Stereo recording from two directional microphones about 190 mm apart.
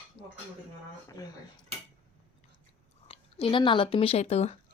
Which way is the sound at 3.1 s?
30° left (ahead or behind).